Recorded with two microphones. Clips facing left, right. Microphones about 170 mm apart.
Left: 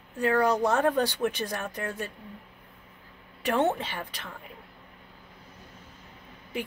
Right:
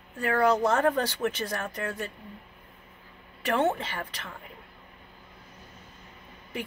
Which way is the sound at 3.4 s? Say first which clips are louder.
Even; 15° left (ahead or behind).